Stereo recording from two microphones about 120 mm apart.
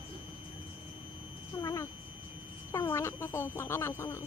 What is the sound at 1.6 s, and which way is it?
Cat, 30° left (ahead or behind).